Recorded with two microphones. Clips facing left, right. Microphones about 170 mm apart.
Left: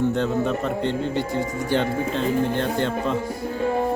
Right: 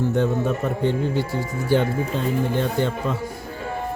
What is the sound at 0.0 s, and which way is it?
Speech, 10° right (ahead or behind).